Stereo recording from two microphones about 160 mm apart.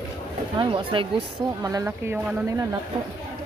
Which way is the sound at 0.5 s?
30° right (ahead or behind).